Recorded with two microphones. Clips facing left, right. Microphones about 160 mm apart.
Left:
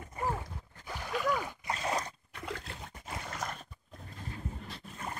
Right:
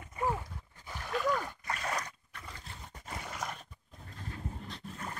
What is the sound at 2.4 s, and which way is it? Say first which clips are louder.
Splash: left 10 dB; 75° left (ahead or behind).